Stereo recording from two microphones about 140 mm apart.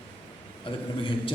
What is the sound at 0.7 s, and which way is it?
Speech, 35° left (ahead or behind).